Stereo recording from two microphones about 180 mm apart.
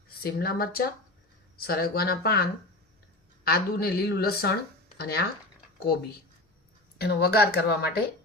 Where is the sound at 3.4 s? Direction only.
60° left (ahead or behind).